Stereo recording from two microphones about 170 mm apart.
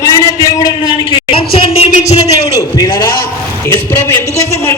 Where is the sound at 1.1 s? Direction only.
35° left (ahead or behind).